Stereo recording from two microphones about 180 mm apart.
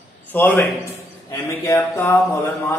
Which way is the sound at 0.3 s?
10° left (ahead or behind).